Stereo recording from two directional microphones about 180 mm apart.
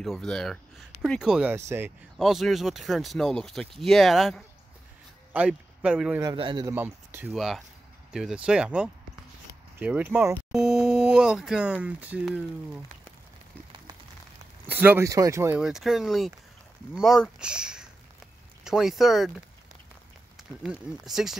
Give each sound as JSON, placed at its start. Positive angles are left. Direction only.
{"t": 0.0, "sound": "speech", "side_deg": 0}
{"t": 6.3, "sound": "a man's voice", "side_deg": -25}
{"t": 6.7, "sound": "speech", "side_deg": -10}
{"t": 14.7, "sound": "speech", "side_deg": -10}
{"t": 15.6, "sound": "speech", "side_deg": 0}
{"t": 20.6, "sound": "speech", "side_deg": -5}